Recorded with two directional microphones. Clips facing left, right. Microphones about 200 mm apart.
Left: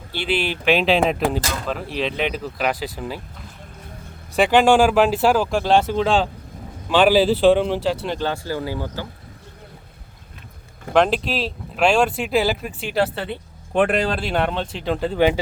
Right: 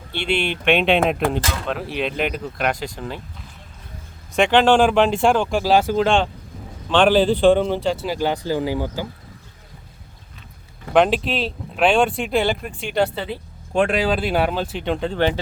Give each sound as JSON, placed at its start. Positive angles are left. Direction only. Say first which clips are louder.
{"t": 0.1, "sound": "speech", "louder": "right 1 dB", "side_deg": 5}
{"t": 4.4, "sound": "speech", "louder": "even", "side_deg": 5}
{"t": 8.2, "sound": "speech", "louder": "right 3 dB", "side_deg": -15}
{"t": 10.9, "sound": "speech", "louder": "right 1 dB", "side_deg": 0}